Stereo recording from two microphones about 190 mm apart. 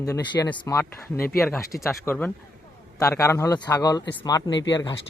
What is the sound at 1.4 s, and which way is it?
A man's voice, centre (ahead or behind).